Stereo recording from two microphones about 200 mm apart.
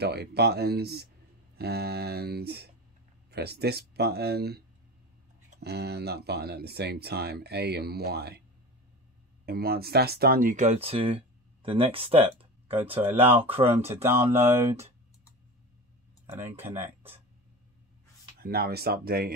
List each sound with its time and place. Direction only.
0.0 s speech: 55° right (ahead or behind)
9.5 s speech: 50° right (ahead or behind); by 12.7 s 30° right (ahead or behind)
13.2 s speech: 10° right (ahead or behind)
13.6 s speech: 30° right (ahead or behind)
13.8 s speech: 10° right (ahead or behind)
16.4 s speech: 10° right (ahead or behind)
18.4 s speech: 50° right (ahead or behind)